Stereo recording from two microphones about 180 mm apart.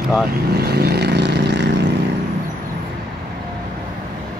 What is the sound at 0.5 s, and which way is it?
Vehicle, 60° right (ahead or behind).